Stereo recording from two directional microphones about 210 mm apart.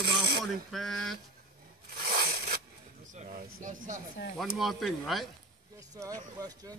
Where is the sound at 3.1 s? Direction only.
40° right (ahead or behind).